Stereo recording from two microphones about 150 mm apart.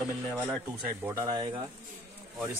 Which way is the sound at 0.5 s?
15° right (ahead or behind).